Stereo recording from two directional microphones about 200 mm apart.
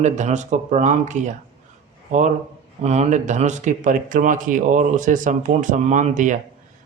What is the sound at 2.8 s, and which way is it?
Speech, 35° right (ahead or behind).